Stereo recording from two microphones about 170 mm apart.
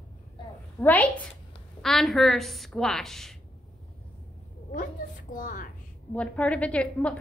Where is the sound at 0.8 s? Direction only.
10° left (ahead or behind).